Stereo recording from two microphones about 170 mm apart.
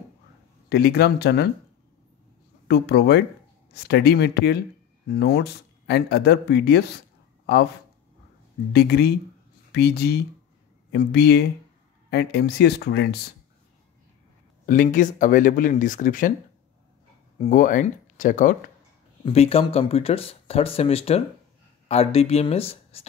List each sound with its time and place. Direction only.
0.7 s speech: 70° left (ahead or behind)
2.7 s speech: 75° left (ahead or behind)
8.7 s speech: 70° left (ahead or behind)
14.7 s speech: 50° left (ahead or behind)
17.4 s speech: 50° left (ahead or behind)
19.2 s speech: 35° left (ahead or behind)